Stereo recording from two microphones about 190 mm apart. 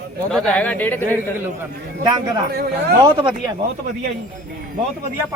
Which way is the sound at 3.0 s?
25° right (ahead or behind).